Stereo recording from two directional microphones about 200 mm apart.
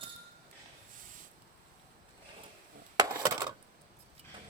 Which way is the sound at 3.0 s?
20° right (ahead or behind).